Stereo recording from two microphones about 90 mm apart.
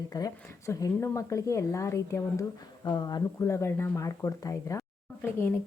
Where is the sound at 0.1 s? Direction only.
45° left (ahead or behind).